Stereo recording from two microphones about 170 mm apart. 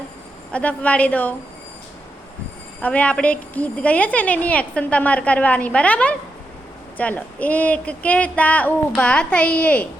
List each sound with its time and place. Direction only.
0.5 s a woman's voice: 10° left (ahead or behind)
2.8 s a woman's voice: 10° left (ahead or behind)